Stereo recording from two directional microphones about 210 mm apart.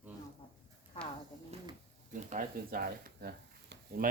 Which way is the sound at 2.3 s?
40° right (ahead or behind).